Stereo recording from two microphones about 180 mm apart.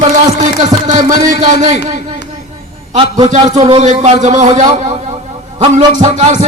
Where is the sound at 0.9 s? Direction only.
45° right (ahead or behind).